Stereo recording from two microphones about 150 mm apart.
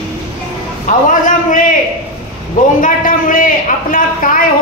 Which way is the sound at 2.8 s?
65° left (ahead or behind).